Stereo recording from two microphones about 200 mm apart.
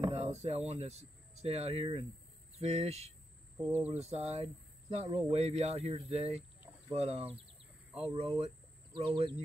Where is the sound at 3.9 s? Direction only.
30° right (ahead or behind).